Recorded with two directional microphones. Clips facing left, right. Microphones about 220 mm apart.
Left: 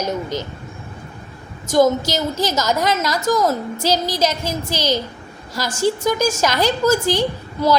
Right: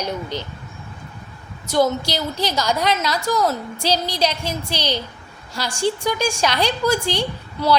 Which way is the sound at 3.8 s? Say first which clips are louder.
Left 1 dB; 45° left (ahead or behind).